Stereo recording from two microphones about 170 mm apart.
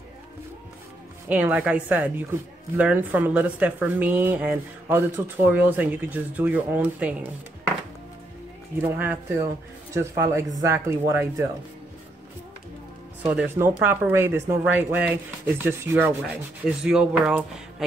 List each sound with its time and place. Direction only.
1.3 s speech: 10° right (ahead or behind)
8.8 s speech: 10° right (ahead or behind)
13.2 s speech: 10° right (ahead or behind)